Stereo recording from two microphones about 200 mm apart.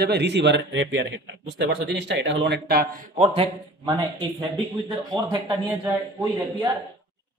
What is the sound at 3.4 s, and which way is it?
A man's voice, 20° right (ahead or behind).